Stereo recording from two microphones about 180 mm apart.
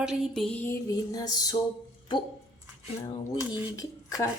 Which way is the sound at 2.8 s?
25° left (ahead or behind).